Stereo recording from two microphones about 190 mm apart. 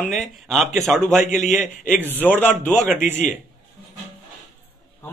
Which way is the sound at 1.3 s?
40° left (ahead or behind).